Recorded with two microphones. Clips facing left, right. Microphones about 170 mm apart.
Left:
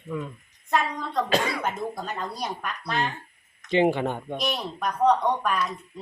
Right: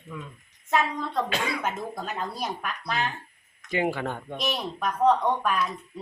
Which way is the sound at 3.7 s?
25° left (ahead or behind).